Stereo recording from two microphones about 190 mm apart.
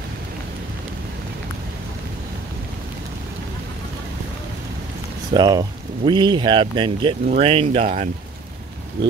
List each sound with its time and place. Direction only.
5.3 s speech: 20° right (ahead or behind)